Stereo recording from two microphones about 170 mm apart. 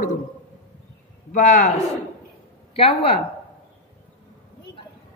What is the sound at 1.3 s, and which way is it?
Speech, 50° left (ahead or behind).